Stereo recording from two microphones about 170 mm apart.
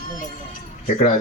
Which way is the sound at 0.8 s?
50° left (ahead or behind).